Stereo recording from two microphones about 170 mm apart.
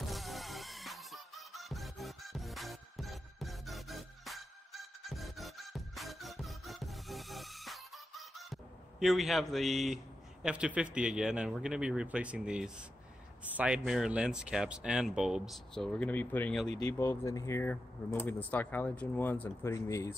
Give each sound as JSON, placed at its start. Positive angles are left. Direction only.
{"t": 0.0, "sound": "music", "side_deg": 0}
{"t": 9.0, "sound": "speech", "side_deg": 0}
{"t": 16.6, "sound": "speech", "side_deg": -40}
{"t": 17.0, "sound": "speech", "side_deg": 15}